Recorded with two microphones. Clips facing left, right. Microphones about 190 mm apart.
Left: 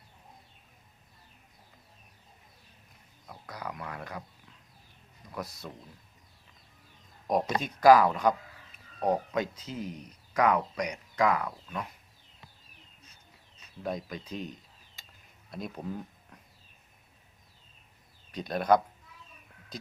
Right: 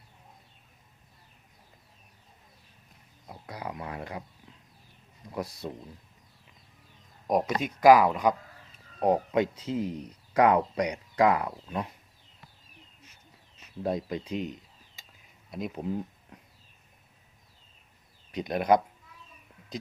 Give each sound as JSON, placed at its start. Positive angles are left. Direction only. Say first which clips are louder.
{"t": 3.2, "sound": "speech", "louder": "right 2 dB", "side_deg": -25}
{"t": 5.3, "sound": "speech", "louder": "right 5 dB", "side_deg": -30}
{"t": 7.6, "sound": "speech", "louder": "right 1 dB", "side_deg": -15}
{"t": 9.0, "sound": "speech", "louder": "right 4 dB", "side_deg": -25}
{"t": 13.8, "sound": "speech", "louder": "right 5 dB", "side_deg": -30}
{"t": 18.3, "sound": "speech", "louder": "right 1 dB", "side_deg": -20}